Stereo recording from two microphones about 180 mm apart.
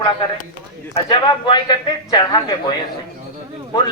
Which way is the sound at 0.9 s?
25° left (ahead or behind).